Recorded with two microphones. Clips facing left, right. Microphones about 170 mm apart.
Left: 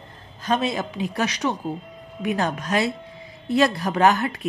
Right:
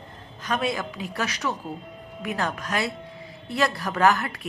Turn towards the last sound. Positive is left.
turn(degrees=20)  # may be behind; listen again after turning